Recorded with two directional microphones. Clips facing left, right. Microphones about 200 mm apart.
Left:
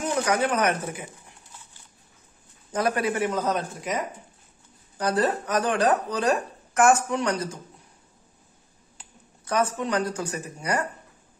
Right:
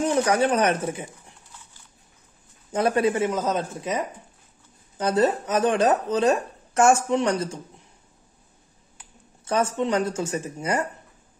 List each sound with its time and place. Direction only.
0.0 s speech: 30° right (ahead or behind)
2.7 s speech: 25° right (ahead or behind)
4.9 s speech: 20° right (ahead or behind)
9.4 s speech: 25° right (ahead or behind)